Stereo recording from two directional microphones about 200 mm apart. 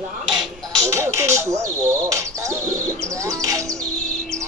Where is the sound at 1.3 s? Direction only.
15° right (ahead or behind).